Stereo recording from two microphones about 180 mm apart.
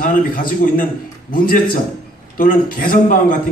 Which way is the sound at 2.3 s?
50° left (ahead or behind).